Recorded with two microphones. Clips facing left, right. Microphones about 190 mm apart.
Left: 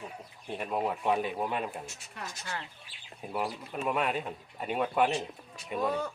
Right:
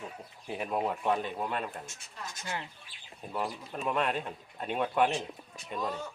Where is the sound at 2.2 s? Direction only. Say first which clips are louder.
Left 1 dB; 65° left (ahead or behind).